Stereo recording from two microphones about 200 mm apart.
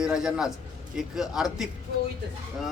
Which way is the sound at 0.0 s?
5° right (ahead or behind).